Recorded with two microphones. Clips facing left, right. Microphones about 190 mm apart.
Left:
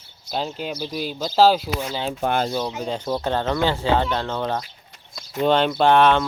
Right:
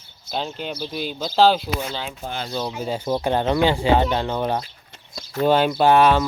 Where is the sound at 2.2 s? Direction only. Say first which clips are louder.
Left 8 dB; 60° left (ahead or behind).